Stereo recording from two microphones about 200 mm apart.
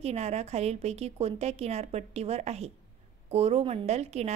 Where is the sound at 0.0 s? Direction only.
30° right (ahead or behind).